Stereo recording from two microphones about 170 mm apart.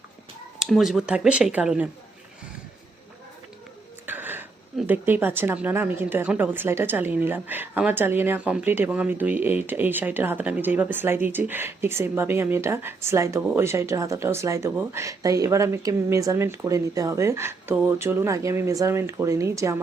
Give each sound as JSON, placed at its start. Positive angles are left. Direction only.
{"t": 0.6, "sound": "speech", "side_deg": 0}
{"t": 4.0, "sound": "speech", "side_deg": -10}
{"t": 13.4, "sound": "speech", "side_deg": -5}
{"t": 13.7, "sound": "speech", "side_deg": -15}